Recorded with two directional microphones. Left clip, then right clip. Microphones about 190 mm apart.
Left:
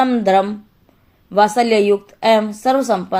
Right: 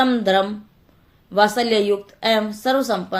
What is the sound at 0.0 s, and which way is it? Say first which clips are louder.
Speech: left 3 dB; 45° left (ahead or behind).